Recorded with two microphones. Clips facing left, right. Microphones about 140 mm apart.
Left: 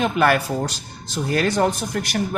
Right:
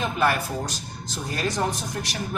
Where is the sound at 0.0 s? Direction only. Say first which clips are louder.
Left 5 dB; 75° left (ahead or behind).